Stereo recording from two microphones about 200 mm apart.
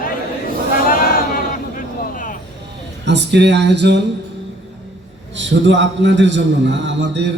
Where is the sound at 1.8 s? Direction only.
40° left (ahead or behind).